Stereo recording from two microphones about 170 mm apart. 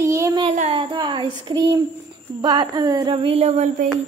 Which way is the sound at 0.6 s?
35° right (ahead or behind).